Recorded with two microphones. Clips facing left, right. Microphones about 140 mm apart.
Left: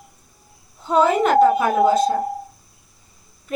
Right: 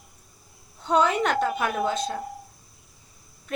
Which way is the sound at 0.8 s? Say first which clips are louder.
Left 5 dB; 5° left (ahead or behind).